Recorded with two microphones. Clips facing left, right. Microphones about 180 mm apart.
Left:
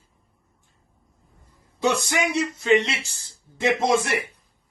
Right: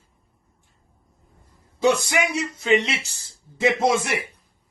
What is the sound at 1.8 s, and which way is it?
Speech, centre (ahead or behind).